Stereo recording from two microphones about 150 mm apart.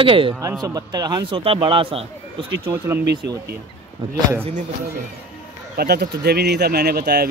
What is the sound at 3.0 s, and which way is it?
Speech, 90° right.